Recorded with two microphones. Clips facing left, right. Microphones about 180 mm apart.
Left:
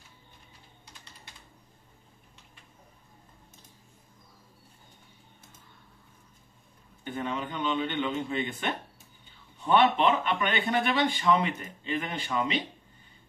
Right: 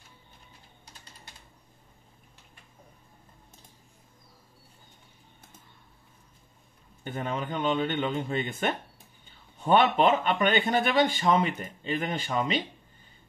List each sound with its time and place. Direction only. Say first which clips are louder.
7.1 s speech: right 1 dB; 45° right (ahead or behind)